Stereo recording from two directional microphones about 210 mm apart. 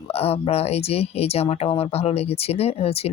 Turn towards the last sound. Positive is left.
turn(degrees=25)  # may be behind; listen again after turning